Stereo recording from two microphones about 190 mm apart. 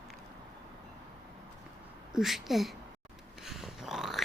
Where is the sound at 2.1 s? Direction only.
Centre (ahead or behind).